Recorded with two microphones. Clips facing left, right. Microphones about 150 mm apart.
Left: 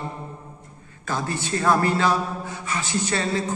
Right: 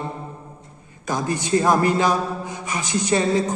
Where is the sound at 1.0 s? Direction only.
15° right (ahead or behind).